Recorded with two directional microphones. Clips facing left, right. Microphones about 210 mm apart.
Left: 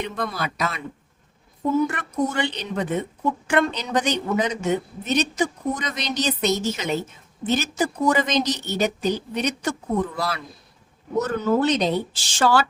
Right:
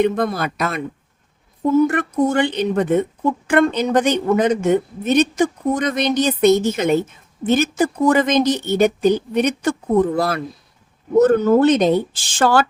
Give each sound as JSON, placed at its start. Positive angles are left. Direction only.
{"t": 0.0, "sound": "speech", "side_deg": -50}
{"t": 1.9, "sound": "a woman's voice", "side_deg": -50}